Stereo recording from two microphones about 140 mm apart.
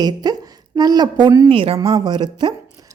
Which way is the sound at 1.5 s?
40° right (ahead or behind).